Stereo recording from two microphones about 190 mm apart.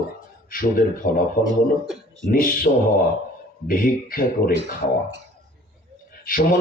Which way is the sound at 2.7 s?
45° left (ahead or behind).